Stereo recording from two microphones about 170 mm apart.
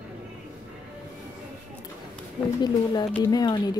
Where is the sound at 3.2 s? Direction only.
25° left (ahead or behind).